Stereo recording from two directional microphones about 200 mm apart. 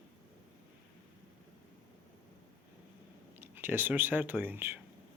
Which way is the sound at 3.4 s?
10° right (ahead or behind).